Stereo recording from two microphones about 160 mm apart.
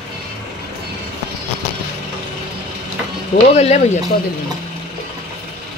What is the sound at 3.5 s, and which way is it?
Speech, 45° left (ahead or behind).